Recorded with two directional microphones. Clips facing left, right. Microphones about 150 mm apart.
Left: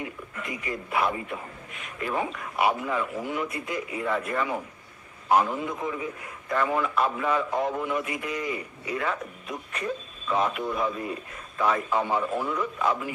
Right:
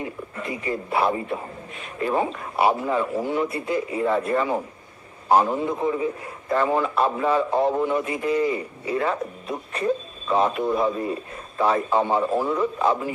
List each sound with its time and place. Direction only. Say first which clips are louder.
0.0 s a man's voice: right 5 dB; 30° right (ahead or behind)